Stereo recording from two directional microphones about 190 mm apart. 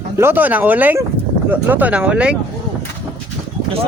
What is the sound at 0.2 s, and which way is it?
Speech, 10° right (ahead or behind).